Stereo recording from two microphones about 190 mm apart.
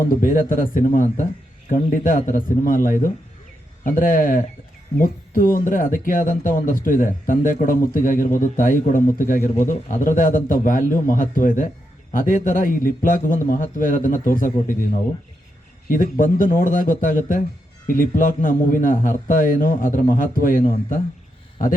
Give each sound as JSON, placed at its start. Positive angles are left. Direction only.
{"t": 0.1, "sound": "a man's voice", "side_deg": 45}